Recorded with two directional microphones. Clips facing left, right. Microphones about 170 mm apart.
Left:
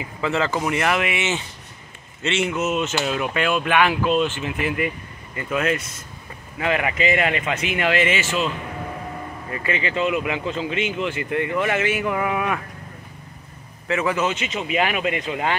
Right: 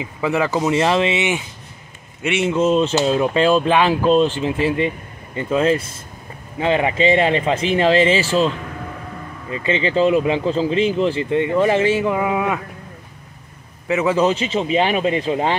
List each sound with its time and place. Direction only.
0.0 s speech: 15° right (ahead or behind)
2.5 s speech: 30° right (ahead or behind)
9.5 s speech: 25° right (ahead or behind)
13.8 s a man's voice: 20° right (ahead or behind)
14.1 s speech: 30° right (ahead or behind)